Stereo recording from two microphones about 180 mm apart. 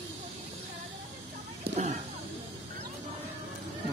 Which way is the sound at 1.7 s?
40° right (ahead or behind).